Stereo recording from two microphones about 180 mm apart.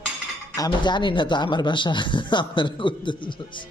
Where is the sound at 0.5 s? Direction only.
20° left (ahead or behind).